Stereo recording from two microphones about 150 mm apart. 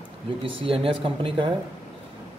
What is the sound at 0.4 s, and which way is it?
Speech, 35° right (ahead or behind).